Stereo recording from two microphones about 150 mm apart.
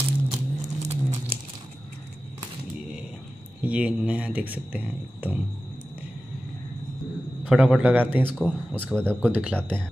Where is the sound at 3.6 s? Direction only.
10° right (ahead or behind).